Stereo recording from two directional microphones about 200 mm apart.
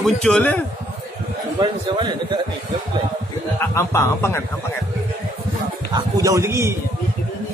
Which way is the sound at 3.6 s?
15° left (ahead or behind).